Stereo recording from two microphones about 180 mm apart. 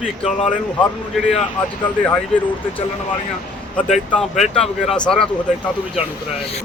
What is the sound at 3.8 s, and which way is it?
Speech, 5° left (ahead or behind).